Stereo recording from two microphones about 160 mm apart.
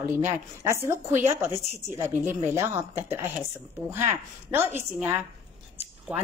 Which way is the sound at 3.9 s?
15° right (ahead or behind).